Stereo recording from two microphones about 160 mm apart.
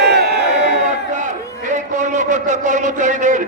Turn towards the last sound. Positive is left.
turn(degrees=-50)  # may be behind; listen again after turning